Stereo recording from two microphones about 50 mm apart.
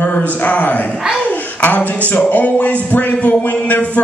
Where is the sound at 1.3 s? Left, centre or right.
Left.